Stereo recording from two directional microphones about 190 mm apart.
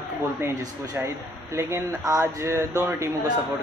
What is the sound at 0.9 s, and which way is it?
A woman's voice, 15° right (ahead or behind).